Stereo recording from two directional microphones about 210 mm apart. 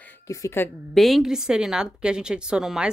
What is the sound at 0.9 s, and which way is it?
A woman's voice, centre (ahead or behind).